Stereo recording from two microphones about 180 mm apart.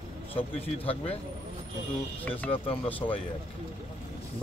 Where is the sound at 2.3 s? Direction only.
10° left (ahead or behind).